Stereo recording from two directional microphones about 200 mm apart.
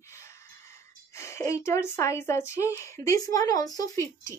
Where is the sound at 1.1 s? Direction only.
15° left (ahead or behind).